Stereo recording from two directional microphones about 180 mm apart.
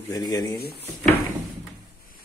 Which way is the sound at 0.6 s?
60° left (ahead or behind).